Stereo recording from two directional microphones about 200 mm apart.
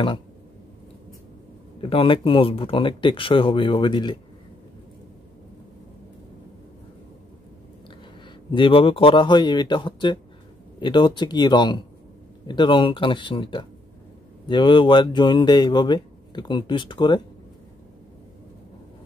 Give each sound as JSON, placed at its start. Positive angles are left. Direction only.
{"t": 1.8, "sound": "speech", "side_deg": 25}
{"t": 8.5, "sound": "speech", "side_deg": 25}